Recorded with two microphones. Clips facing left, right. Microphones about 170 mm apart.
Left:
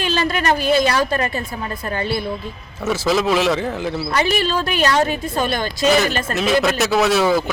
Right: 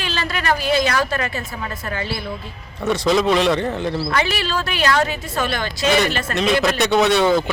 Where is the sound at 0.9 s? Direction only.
35° left (ahead or behind).